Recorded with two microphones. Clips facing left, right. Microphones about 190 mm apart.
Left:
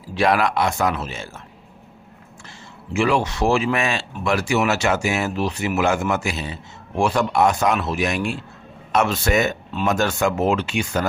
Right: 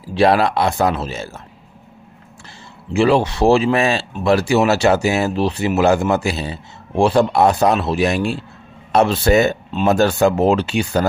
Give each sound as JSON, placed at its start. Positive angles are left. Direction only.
{"t": 0.1, "sound": "speech", "side_deg": -30}
{"t": 2.9, "sound": "speech", "side_deg": -30}